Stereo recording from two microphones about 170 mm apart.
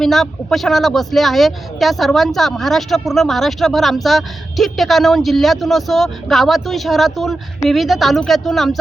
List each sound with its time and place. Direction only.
0.0 s speech: centre (ahead or behind)